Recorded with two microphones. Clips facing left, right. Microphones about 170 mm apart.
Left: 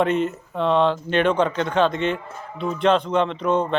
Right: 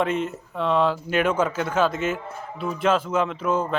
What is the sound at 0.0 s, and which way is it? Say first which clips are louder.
Speech: left 4 dB; centre (ahead or behind).